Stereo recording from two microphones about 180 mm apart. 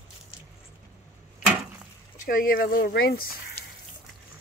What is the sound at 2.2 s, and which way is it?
Speech, 50° left (ahead or behind).